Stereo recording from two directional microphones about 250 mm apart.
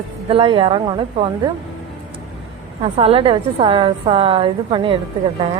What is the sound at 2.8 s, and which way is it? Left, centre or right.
A woman's voice, right.